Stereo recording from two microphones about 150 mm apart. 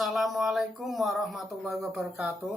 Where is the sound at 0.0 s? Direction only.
Centre (ahead or behind).